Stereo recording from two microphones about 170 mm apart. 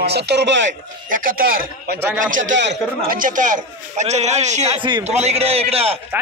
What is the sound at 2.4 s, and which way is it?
Speech, 90° right.